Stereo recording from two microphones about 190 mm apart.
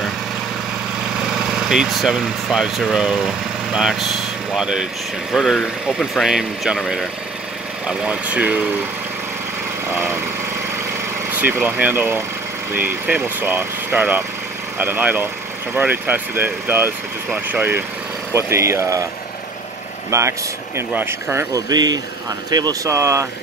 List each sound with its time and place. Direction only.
1.2 s speech: 5° right (ahead or behind)
11.6 s speech: 10° right (ahead or behind)
20.1 s speech: 15° right (ahead or behind)